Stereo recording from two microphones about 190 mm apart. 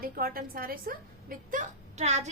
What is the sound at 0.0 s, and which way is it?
A woman's voice, 50° right (ahead or behind).